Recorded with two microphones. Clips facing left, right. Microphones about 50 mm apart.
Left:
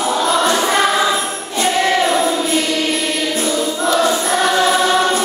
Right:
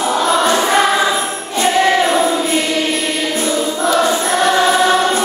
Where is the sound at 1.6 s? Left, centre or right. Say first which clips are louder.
Right 2 dB; centre.